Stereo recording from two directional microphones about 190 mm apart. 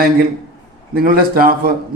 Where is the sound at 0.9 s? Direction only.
50° right (ahead or behind).